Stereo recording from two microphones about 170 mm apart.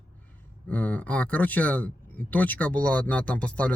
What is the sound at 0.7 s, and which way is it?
Speech, 10° left (ahead or behind).